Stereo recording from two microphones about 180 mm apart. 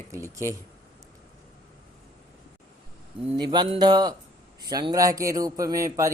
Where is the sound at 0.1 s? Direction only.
15° right (ahead or behind).